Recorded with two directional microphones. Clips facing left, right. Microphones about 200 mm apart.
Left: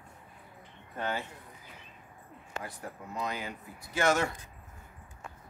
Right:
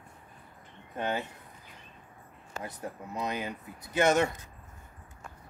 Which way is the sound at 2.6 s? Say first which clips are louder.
Right 3 dB; 20° right (ahead or behind).